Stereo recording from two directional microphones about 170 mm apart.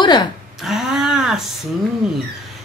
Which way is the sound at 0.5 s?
Centre (ahead or behind).